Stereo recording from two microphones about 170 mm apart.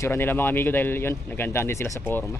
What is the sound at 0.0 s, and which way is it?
A man's voice, 15° left (ahead or behind).